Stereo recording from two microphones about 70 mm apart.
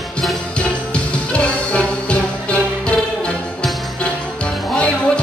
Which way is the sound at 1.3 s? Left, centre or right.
Centre.